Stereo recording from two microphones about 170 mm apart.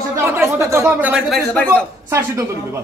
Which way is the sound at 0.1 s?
15° right (ahead or behind).